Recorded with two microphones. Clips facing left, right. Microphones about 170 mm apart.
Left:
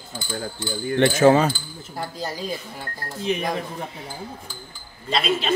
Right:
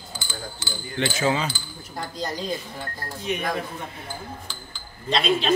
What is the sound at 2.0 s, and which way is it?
Speech, 10° left (ahead or behind).